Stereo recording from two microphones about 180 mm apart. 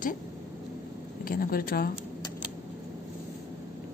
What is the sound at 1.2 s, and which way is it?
Speech, 50° left (ahead or behind).